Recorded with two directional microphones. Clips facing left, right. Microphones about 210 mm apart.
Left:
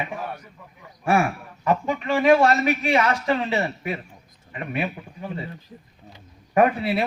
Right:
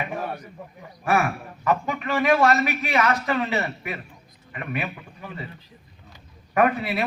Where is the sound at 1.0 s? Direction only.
30° left (ahead or behind).